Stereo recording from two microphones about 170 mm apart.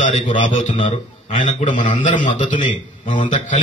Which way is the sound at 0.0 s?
45° left (ahead or behind).